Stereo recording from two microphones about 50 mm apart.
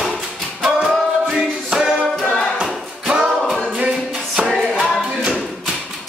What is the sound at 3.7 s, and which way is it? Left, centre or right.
Music, centre.